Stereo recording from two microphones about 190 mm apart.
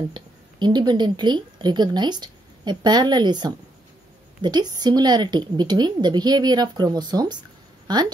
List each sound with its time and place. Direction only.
0.1 s a woman's voice: 25° right (ahead or behind)